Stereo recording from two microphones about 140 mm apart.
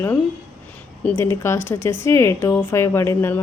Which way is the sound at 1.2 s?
20° left (ahead or behind).